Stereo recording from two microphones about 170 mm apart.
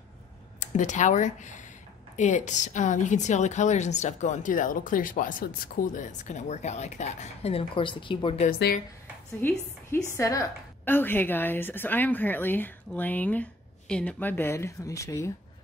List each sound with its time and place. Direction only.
0.6 s a woman's voice: 45° left (ahead or behind)
8.5 s speech: 65° left (ahead or behind)
9.4 s a woman's voice: 10° left (ahead or behind)